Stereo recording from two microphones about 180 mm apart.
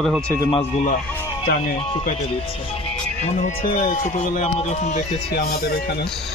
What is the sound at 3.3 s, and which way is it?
Speech, 45° left (ahead or behind).